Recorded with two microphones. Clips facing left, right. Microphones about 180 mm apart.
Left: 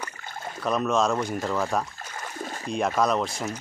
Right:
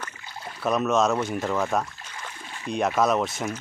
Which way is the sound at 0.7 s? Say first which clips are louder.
Right 2 dB; centre (ahead or behind).